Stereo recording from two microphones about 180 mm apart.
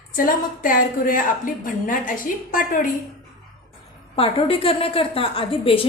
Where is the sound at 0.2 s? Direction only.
50° left (ahead or behind).